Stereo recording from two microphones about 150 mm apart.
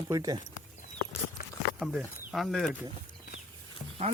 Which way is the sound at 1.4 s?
75° left (ahead or behind).